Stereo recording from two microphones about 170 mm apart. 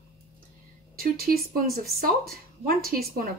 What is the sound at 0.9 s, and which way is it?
A woman's voice, 60° right (ahead or behind).